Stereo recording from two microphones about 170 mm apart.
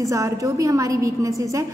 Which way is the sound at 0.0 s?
20° right (ahead or behind).